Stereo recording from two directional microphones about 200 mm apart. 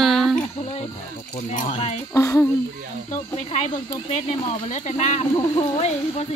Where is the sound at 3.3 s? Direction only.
30° left (ahead or behind).